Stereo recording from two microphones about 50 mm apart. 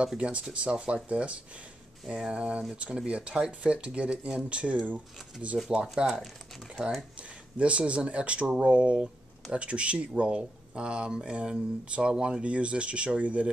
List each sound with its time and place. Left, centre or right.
0.2 s speech: right